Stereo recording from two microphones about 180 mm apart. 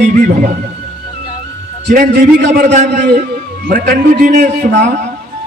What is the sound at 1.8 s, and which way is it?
Speech, 55° right (ahead or behind).